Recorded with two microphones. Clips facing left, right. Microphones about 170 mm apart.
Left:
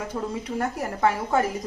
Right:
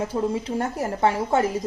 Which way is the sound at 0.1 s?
25° right (ahead or behind).